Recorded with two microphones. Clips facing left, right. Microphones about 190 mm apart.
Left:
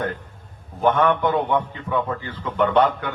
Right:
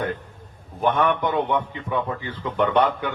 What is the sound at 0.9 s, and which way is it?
Speech, 15° right (ahead or behind).